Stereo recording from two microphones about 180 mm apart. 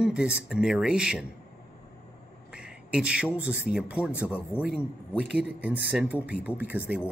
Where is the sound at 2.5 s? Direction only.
5° right (ahead or behind).